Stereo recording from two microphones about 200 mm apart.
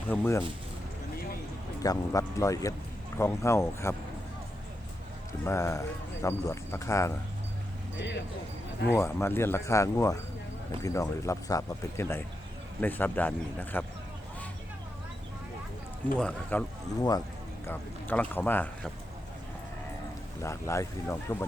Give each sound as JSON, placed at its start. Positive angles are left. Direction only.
{"t": 0.1, "sound": "speech", "side_deg": 10}
{"t": 1.8, "sound": "speech", "side_deg": 15}
{"t": 5.5, "sound": "speech", "side_deg": 15}
{"t": 8.9, "sound": "speech", "side_deg": 10}
{"t": 16.1, "sound": "speech", "side_deg": 5}
{"t": 17.0, "sound": "speech", "side_deg": 20}
{"t": 20.4, "sound": "speech", "side_deg": 15}